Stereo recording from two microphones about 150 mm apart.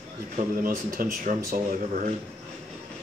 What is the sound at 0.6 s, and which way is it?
Speech, 70° right (ahead or behind).